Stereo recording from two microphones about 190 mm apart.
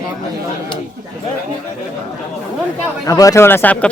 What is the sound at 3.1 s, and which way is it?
Speech, 15° left (ahead or behind).